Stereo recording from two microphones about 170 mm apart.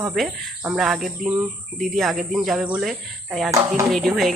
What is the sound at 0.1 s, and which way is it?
Speech, 5° right (ahead or behind).